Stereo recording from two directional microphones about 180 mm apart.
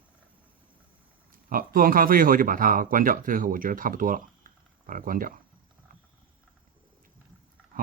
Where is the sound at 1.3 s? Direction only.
50° right (ahead or behind).